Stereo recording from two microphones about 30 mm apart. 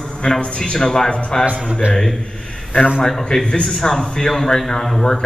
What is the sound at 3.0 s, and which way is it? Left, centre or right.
Speech, centre.